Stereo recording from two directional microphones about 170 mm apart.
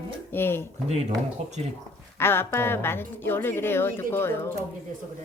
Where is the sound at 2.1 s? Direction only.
15° left (ahead or behind).